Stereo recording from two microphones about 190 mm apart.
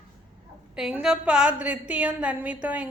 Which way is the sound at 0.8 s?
5° right (ahead or behind).